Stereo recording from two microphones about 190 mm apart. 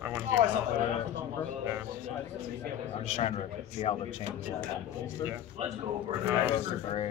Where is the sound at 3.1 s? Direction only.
35° left (ahead or behind).